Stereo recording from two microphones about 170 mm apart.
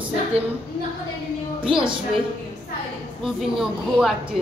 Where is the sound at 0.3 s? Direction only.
35° right (ahead or behind).